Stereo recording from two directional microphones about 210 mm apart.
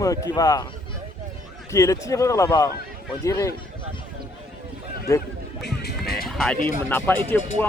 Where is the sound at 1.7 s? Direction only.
15° left (ahead or behind).